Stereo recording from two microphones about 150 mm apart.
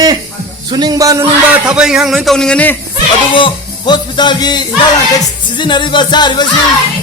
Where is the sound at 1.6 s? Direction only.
5° right (ahead or behind).